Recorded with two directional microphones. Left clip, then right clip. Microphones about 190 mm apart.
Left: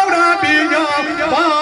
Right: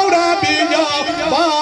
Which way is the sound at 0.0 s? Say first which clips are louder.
Left 1 dB; 10° right (ahead or behind).